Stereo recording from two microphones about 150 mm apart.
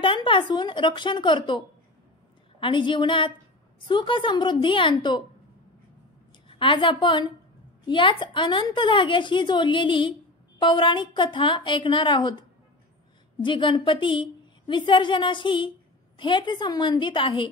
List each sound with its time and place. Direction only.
0.0 s a woman's voice: 35° left (ahead or behind)
2.6 s a woman's voice: 30° left (ahead or behind)
6.6 s a woman's voice: 35° left (ahead or behind)